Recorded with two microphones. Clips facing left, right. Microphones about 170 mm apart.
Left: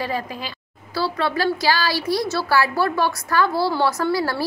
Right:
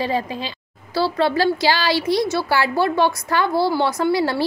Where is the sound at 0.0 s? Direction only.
25° right (ahead or behind).